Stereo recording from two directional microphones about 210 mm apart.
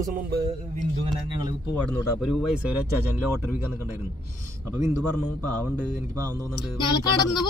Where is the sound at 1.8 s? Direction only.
Centre (ahead or behind).